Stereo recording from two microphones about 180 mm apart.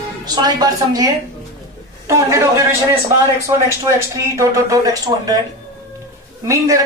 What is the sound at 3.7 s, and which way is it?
Speech, 15° right (ahead or behind).